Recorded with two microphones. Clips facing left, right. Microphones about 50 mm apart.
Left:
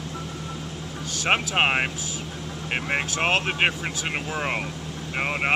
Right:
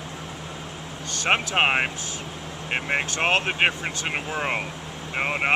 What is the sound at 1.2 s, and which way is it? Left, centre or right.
Speech, centre.